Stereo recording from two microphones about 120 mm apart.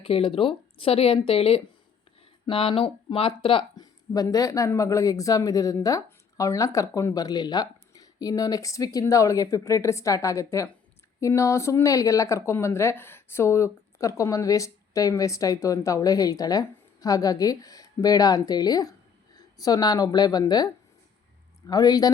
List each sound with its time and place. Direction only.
0.0 s a woman's voice: 50° left (ahead or behind); by 22.1 s 30° left (ahead or behind)